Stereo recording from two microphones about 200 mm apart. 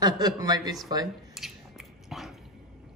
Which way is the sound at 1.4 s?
Centre (ahead or behind).